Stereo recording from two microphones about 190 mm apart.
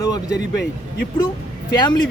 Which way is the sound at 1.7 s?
20° left (ahead or behind).